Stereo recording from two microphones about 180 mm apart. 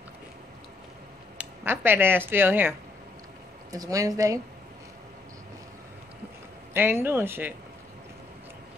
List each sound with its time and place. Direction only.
1.4 s speech: 10° right (ahead or behind)
3.7 s speech: 20° right (ahead or behind)
6.7 s speech: 10° right (ahead or behind)